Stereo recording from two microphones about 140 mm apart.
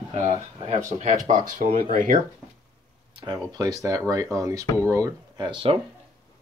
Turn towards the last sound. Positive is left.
turn(degrees=-35)  # may be behind; listen again after turning